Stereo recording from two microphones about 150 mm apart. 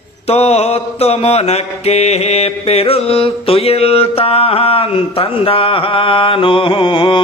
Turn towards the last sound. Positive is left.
turn(degrees=35)  # may be behind; listen again after turning